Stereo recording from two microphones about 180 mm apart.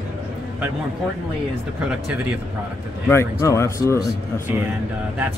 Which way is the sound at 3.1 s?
15° left (ahead or behind).